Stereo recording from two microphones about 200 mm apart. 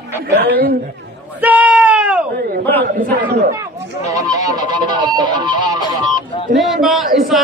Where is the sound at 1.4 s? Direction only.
5° right (ahead or behind).